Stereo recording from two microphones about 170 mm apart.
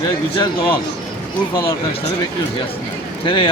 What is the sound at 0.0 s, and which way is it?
A man's voice, 25° left (ahead or behind).